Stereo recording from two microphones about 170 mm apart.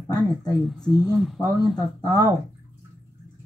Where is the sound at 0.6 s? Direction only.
5° left (ahead or behind).